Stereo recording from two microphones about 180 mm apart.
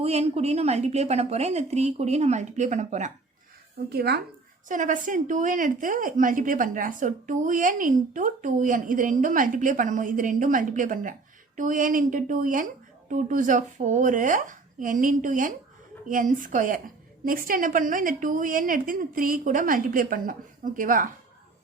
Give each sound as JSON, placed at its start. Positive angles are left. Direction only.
{"t": 0.0, "sound": "a woman's voice", "side_deg": -35}
{"t": 3.8, "sound": "speech", "side_deg": -60}
{"t": 4.7, "sound": "a woman's voice", "side_deg": -45}